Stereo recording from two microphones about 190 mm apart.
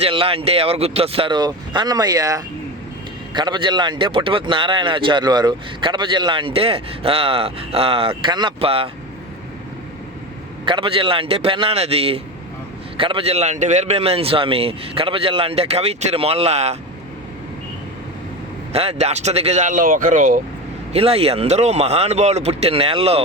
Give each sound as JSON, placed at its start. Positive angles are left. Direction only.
{"t": 0.0, "sound": "a man's voice", "side_deg": -30}
{"t": 10.7, "sound": "a man's voice", "side_deg": -30}
{"t": 18.7, "sound": "a man's voice", "side_deg": -30}
{"t": 20.9, "sound": "a man's voice", "side_deg": -30}